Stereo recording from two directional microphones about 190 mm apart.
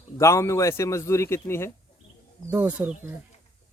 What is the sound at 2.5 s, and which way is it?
Speech, 10° right (ahead or behind).